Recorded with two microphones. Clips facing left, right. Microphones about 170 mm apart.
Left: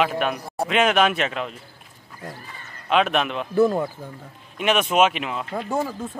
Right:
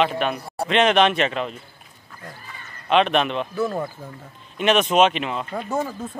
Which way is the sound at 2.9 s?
5° left (ahead or behind).